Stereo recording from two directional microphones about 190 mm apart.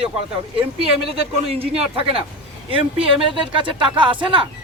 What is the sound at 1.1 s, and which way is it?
Speech, 30° right (ahead or behind).